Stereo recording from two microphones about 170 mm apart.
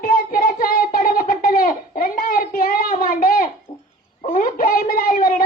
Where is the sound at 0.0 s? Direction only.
60° left (ahead or behind).